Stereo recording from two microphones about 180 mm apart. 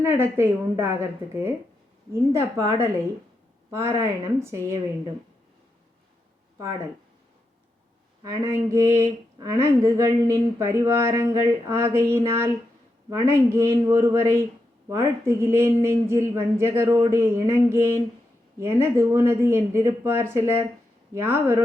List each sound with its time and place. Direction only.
0.0 s speech: 15° right (ahead or behind)
8.2 s speech: 15° right (ahead or behind)